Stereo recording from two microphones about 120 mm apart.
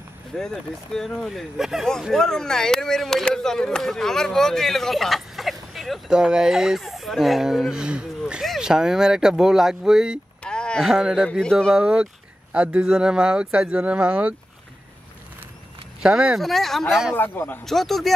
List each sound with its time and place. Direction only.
0.3 s speech: 5° left (ahead or behind)
10.4 s a sound: 5° left (ahead or behind)
10.9 s speech: 5° right (ahead or behind)
16.0 s speech: 5° right (ahead or behind)
17.1 s a man's voice: 15° left (ahead or behind)
17.6 s speech: centre (ahead or behind)